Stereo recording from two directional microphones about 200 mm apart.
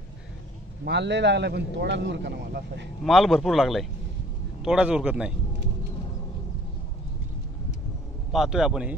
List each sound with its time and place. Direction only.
0.8 s a man's voice: 60° right (ahead or behind)
3.0 s speech: centre (ahead or behind)
8.3 s speech: centre (ahead or behind)